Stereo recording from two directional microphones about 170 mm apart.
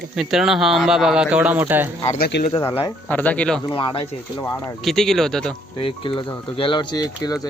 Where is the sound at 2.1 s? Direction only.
65° left (ahead or behind).